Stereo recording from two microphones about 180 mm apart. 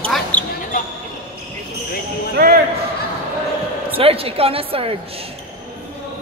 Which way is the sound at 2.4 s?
65° right (ahead or behind).